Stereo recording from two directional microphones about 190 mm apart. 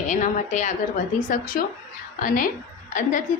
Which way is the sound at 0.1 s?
40° left (ahead or behind).